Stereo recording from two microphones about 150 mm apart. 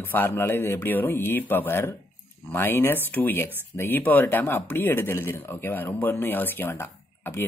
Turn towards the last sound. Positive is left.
turn(degrees=15)  # may be behind; listen again after turning